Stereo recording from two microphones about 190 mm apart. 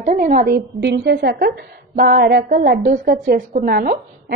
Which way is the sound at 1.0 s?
60° right (ahead or behind).